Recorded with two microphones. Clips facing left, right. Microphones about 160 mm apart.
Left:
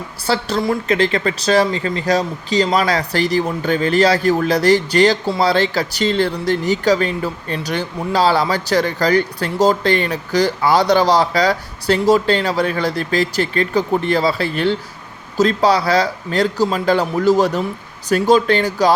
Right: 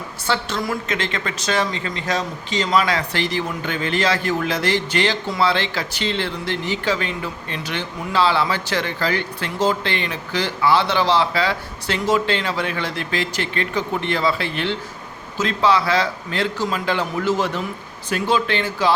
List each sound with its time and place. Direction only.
0.3 s speech: 35° left (ahead or behind)